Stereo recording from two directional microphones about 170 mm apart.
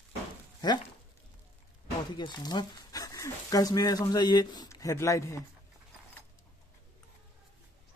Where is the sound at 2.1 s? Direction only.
25° left (ahead or behind).